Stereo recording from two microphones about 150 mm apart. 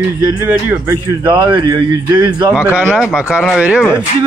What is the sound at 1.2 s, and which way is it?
Speech, 30° right (ahead or behind).